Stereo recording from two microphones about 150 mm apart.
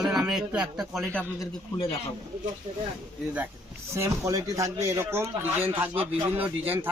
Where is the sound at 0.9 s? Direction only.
5° left (ahead or behind).